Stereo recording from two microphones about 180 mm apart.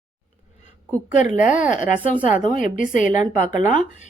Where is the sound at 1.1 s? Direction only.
45° left (ahead or behind).